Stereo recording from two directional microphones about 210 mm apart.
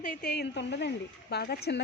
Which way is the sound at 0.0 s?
45° left (ahead or behind).